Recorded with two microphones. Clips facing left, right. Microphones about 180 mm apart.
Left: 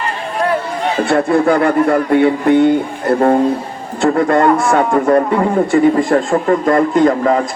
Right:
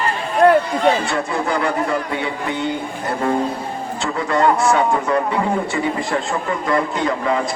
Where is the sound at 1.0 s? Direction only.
55° left (ahead or behind).